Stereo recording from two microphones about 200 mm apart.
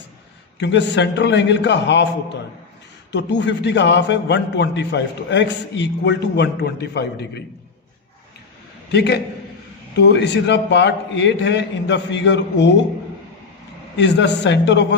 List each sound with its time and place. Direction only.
0.6 s a man's voice: 60° left (ahead or behind)
8.9 s a man's voice: 55° left (ahead or behind)
13.9 s a man's voice: 60° left (ahead or behind)